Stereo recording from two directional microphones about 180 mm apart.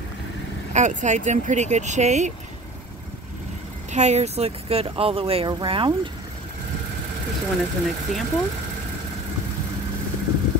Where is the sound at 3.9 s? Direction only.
40° right (ahead or behind).